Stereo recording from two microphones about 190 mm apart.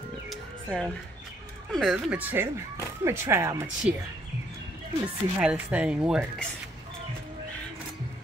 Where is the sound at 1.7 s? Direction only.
Centre (ahead or behind); by 3.6 s 15° right (ahead or behind).